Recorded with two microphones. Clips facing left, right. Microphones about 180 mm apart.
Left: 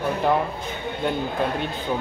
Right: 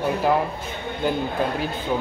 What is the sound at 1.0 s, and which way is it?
Speech, centre (ahead or behind).